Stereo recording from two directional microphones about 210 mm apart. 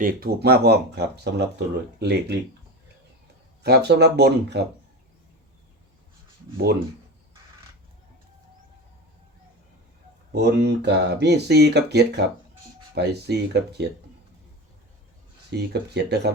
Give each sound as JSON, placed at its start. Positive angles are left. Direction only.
{"t": 0.0, "sound": "speech", "side_deg": -45}
{"t": 3.6, "sound": "speech", "side_deg": -50}
{"t": 10.3, "sound": "speech", "side_deg": -50}
{"t": 15.5, "sound": "speech", "side_deg": -50}